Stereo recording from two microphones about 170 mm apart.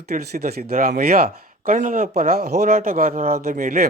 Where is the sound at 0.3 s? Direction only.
65° right (ahead or behind).